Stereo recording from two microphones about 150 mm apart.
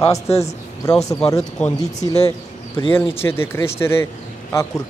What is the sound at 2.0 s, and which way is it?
A man's voice, 20° left (ahead or behind).